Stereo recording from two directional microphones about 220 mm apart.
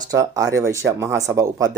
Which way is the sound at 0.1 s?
15° right (ahead or behind).